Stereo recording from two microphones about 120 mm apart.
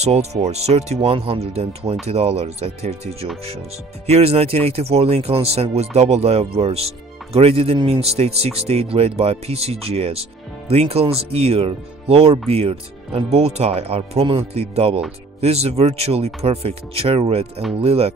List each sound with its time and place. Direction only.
0.0 s speech: 60° right (ahead or behind)